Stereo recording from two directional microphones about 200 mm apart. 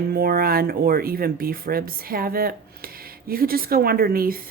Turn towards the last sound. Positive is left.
turn(degrees=-45)  # may be behind; listen again after turning